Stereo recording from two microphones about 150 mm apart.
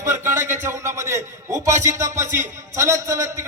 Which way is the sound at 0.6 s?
15° right (ahead or behind).